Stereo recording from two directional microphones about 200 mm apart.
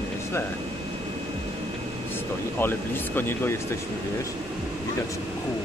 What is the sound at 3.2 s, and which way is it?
Speech, 10° left (ahead or behind).